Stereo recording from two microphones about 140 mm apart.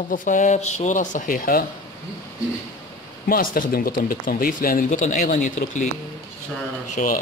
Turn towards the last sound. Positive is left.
turn(degrees=60)  # may be behind; listen again after turning